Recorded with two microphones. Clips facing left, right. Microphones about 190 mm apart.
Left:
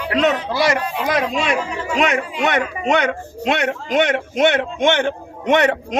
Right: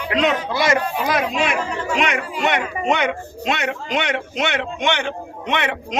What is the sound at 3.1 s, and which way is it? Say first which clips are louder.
A man's voice: left 3 dB; 55° left (ahead or behind).